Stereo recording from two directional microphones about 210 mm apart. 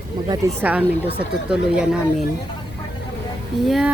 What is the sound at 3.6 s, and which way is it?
Speech, centre (ahead or behind).